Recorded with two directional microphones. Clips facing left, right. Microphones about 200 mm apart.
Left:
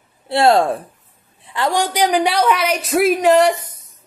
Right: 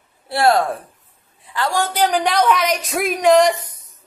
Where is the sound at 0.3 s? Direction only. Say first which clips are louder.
Left 3 dB; 25° left (ahead or behind); by 3.8 s 10° left (ahead or behind).